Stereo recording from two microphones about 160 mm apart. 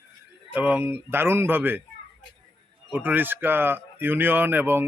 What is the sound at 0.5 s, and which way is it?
Speech, 10° right (ahead or behind).